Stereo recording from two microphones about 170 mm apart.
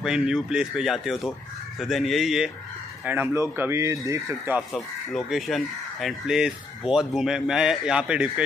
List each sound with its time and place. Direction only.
0.0 s speech: 5° right (ahead or behind)
5.1 s speech: centre (ahead or behind)